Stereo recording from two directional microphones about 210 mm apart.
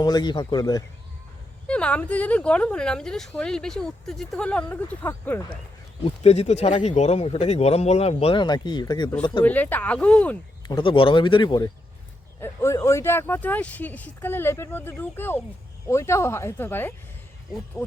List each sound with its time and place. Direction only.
0.0 s speech: 20° left (ahead or behind)
1.6 s speech: 5° left (ahead or behind)
6.1 s speech: 30° left (ahead or behind)
9.4 s speech: 10° left (ahead or behind)
10.6 s speech: 20° left (ahead or behind)